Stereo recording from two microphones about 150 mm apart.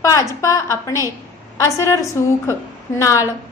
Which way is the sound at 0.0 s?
20° left (ahead or behind).